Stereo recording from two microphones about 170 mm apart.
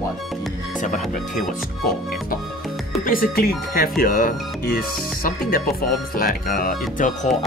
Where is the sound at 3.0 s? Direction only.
60° left (ahead or behind).